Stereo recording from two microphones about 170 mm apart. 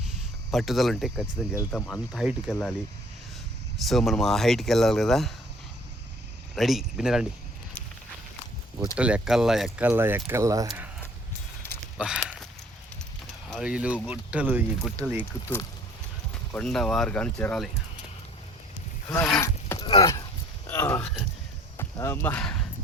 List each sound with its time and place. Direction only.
0.5 s speech: centre (ahead or behind)
3.8 s speech: centre (ahead or behind)
6.6 s speech: centre (ahead or behind)
9.0 s speech: 5° right (ahead or behind)
11.9 s a sound: 5° right (ahead or behind)
13.5 s speech: 5° right (ahead or behind)
16.5 s speech: 5° left (ahead or behind)
19.4 s a sound: 15° left (ahead or behind)
20.7 s a sound: 10° left (ahead or behind)
21.8 s speech: 15° left (ahead or behind)